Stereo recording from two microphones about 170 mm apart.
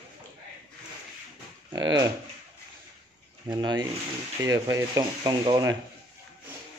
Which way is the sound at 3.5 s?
25° right (ahead or behind).